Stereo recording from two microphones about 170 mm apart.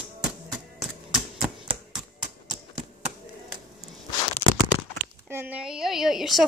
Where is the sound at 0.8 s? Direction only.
Centre (ahead or behind).